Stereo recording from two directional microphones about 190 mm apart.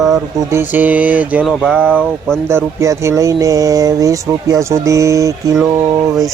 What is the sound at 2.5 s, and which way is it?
Speech, 15° right (ahead or behind).